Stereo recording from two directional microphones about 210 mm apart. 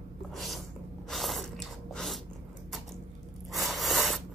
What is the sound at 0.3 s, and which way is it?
Sneeze, centre (ahead or behind).